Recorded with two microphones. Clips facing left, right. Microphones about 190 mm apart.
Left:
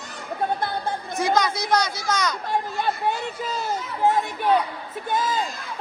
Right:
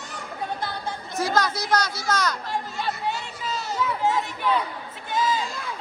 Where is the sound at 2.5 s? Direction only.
55° left (ahead or behind).